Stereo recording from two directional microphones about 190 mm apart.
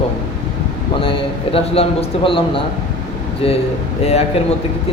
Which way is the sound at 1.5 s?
30° left (ahead or behind).